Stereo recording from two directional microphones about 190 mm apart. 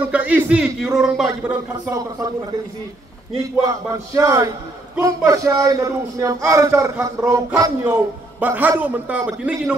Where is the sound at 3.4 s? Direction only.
15° right (ahead or behind).